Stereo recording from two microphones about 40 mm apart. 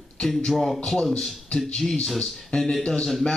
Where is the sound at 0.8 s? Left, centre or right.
Centre.